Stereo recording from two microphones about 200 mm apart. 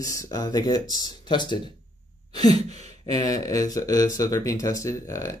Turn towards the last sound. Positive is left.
turn(degrees=15)  # may be behind; listen again after turning